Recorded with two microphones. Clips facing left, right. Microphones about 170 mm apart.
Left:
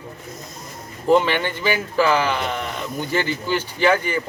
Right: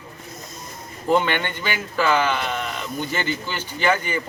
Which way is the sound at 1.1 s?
5° left (ahead or behind).